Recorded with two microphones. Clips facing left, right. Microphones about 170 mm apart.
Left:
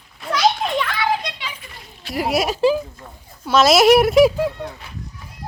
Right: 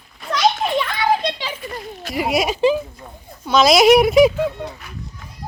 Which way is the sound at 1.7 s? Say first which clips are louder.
Right 12 dB; 45° right (ahead or behind).